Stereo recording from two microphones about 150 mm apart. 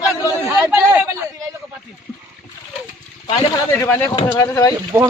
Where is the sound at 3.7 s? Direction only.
15° left (ahead or behind).